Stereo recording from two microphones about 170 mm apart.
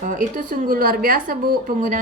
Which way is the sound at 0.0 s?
50° right (ahead or behind).